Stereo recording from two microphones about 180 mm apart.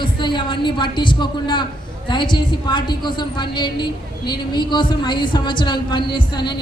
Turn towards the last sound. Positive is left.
turn(degrees=25)  # may be behind; listen again after turning